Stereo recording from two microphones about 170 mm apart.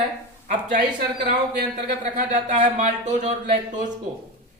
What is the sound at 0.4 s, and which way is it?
Speech, 50° right (ahead or behind).